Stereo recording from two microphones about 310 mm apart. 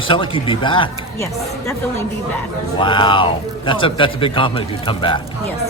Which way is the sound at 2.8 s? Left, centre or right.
Centre.